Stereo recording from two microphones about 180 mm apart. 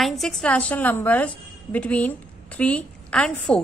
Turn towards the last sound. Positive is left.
turn(degrees=5)  # may be behind; listen again after turning